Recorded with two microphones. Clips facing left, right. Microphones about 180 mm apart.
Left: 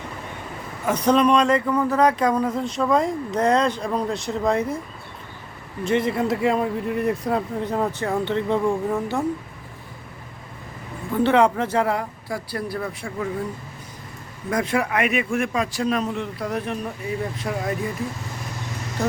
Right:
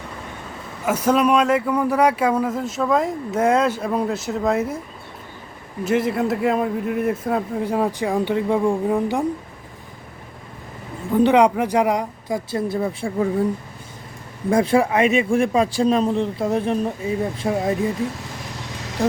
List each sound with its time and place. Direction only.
0.9 s speech: 5° right (ahead or behind)
5.8 s speech: 5° right (ahead or behind)
11.1 s speech: 15° right (ahead or behind)
14.5 s speech: 30° right (ahead or behind)